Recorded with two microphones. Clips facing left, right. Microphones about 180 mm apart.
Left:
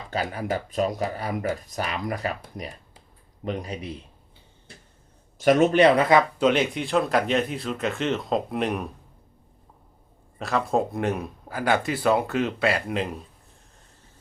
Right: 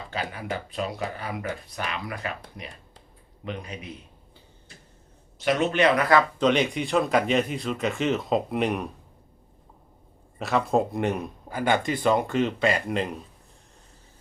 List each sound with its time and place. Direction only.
0.1 s speech: 40° left (ahead or behind)
3.4 s speech: 35° left (ahead or behind)
5.4 s speech: 45° left (ahead or behind)
6.4 s speech: 5° left (ahead or behind)
10.3 s speech: centre (ahead or behind)